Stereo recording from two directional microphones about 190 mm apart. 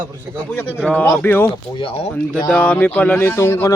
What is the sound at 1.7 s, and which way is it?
Speech, 25° left (ahead or behind).